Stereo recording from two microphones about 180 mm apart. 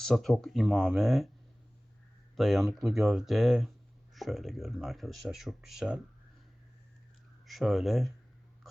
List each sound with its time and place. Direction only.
0.0 s speech: centre (ahead or behind)
2.3 s speech: centre (ahead or behind)
7.4 s speech: centre (ahead or behind)